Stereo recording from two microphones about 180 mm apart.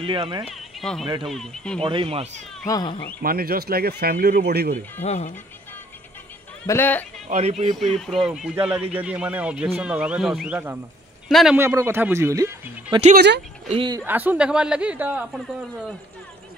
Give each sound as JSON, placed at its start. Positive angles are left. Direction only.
{"t": 0.0, "sound": "speech", "side_deg": -25}
{"t": 0.5, "sound": "speech", "side_deg": 0}
{"t": 1.8, "sound": "speech", "side_deg": -30}
{"t": 2.6, "sound": "speech", "side_deg": 20}
{"t": 3.2, "sound": "speech", "side_deg": -55}
{"t": 5.0, "sound": "speech", "side_deg": 35}
{"t": 6.6, "sound": "speech", "side_deg": 15}
{"t": 7.2, "sound": "speech", "side_deg": -40}
{"t": 7.7, "sound": "speech", "side_deg": 0}
{"t": 13.7, "sound": "speech", "side_deg": -25}
{"t": 14.0, "sound": "speech", "side_deg": -10}